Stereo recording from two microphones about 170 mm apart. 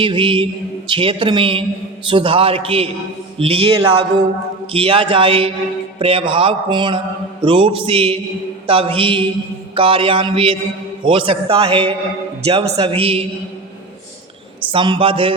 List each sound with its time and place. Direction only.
0.0 s a man's voice: 30° right (ahead or behind)
14.7 s a man's voice: 30° right (ahead or behind)